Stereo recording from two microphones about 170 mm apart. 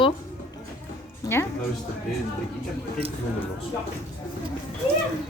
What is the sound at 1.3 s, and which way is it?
Speech, 15° left (ahead or behind).